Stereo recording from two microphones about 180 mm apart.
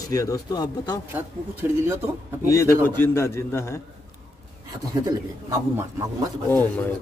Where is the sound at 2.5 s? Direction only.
15° left (ahead or behind).